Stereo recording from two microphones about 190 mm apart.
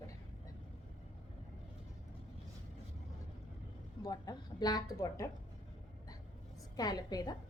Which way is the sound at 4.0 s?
20° left (ahead or behind).